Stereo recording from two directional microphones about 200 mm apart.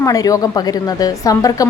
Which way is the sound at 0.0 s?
15° left (ahead or behind).